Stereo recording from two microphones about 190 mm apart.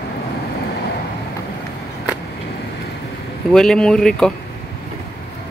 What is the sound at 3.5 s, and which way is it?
Speech, 5° left (ahead or behind).